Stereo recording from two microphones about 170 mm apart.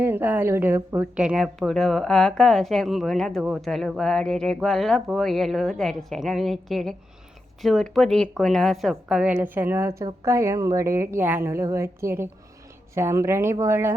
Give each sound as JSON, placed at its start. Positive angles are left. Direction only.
{"t": 0.0, "sound": "a woman's voice", "side_deg": -10}